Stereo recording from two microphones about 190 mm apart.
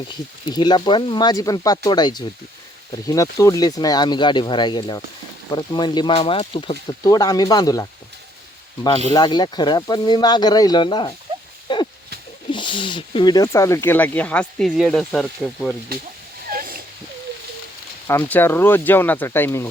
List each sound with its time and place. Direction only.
0.5 s speech: 20° left (ahead or behind)
9.1 s speech: 20° left (ahead or behind)
11.7 s a sound: 25° left (ahead or behind)
12.5 s speech: 25° left (ahead or behind); by 15.7 s centre (ahead or behind)
16.5 s a sound: 50° right (ahead or behind)
18.1 s speech: 10° left (ahead or behind)